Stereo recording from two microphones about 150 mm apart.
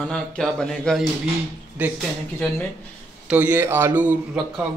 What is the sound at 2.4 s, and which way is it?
Speech, 10° left (ahead or behind).